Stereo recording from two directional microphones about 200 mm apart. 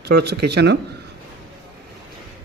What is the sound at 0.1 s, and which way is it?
Speech, 55° right (ahead or behind).